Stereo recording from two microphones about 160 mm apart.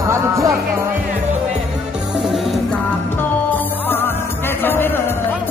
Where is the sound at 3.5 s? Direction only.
10° left (ahead or behind).